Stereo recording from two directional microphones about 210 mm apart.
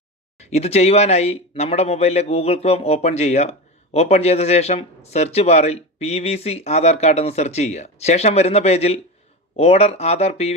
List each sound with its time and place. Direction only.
0.3 s speech: 30° left (ahead or behind)